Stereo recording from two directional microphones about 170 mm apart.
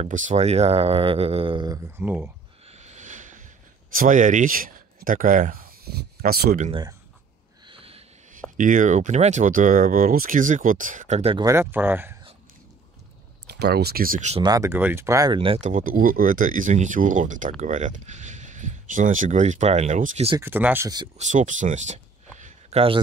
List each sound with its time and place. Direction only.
0.0 s speech: 40° right (ahead or behind)
1.9 s speech: 10° right (ahead or behind)
2.6 s a sound: 40° right (ahead or behind); by 6.6 s 60° right (ahead or behind)
6.7 s speech: 25° right (ahead or behind)
7.6 s a sound: 35° right (ahead or behind)
8.3 s speech: 50° right (ahead or behind)
11.3 s speech: 15° right (ahead or behind)
13.5 s speech: 70° right (ahead or behind); by 14.3 s 55° right (ahead or behind)
14.4 s speech: 20° right (ahead or behind)
15.6 s speech: 55° right (ahead or behind)
20.3 s speech: 10° right (ahead or behind)
21.2 s a sound: 45° right (ahead or behind)